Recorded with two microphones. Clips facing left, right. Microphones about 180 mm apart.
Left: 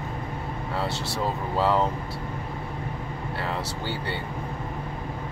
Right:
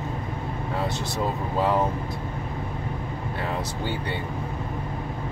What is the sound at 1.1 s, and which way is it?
Speech, 15° right (ahead or behind).